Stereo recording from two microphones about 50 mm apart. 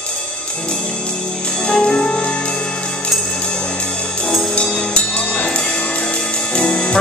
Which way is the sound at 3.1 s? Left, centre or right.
Centre.